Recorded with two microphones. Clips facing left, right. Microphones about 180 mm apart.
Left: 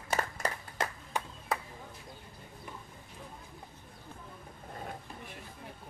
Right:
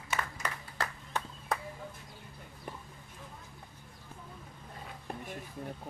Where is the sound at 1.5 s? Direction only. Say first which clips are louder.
Even; centre (ahead or behind).